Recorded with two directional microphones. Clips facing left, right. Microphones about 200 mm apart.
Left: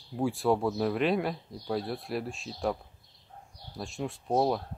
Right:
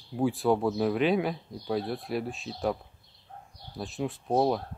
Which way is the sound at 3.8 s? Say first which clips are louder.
Right 3 dB; centre (ahead or behind).